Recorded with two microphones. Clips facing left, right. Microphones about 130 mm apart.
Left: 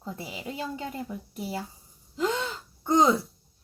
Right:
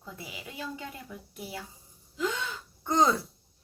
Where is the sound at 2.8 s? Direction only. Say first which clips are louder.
Left 3 dB; 20° left (ahead or behind).